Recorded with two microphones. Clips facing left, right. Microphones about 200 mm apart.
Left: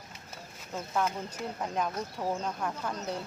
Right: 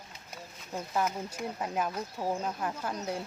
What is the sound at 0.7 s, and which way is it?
Speech, 5° right (ahead or behind).